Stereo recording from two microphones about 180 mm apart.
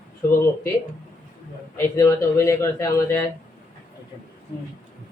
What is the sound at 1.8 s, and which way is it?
Speech, 15° left (ahead or behind).